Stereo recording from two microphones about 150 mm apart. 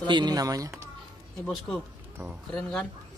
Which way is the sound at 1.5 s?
5° left (ahead or behind).